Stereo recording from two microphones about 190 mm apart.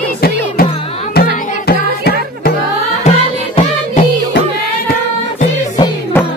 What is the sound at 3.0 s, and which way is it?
Music, 40° left (ahead or behind).